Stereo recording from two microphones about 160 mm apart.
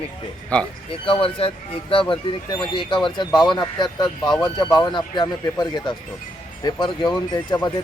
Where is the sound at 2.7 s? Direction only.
30° left (ahead or behind).